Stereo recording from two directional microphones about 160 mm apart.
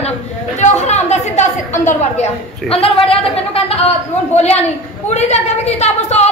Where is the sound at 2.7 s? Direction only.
35° left (ahead or behind).